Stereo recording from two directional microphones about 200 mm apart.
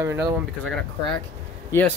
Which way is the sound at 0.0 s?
10° right (ahead or behind).